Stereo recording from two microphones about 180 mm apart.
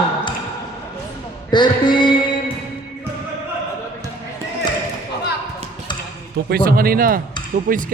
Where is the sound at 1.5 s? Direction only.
25° left (ahead or behind).